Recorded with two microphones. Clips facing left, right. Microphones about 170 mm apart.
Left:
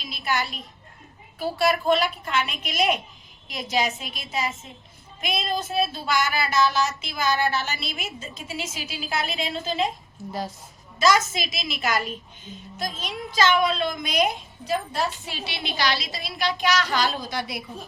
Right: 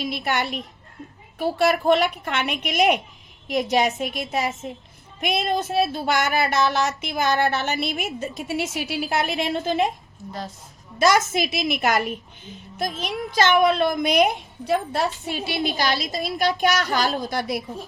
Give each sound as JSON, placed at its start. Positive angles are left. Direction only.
{"t": 0.1, "sound": "speech", "side_deg": -60}
{"t": 11.0, "sound": "a woman's voice", "side_deg": -60}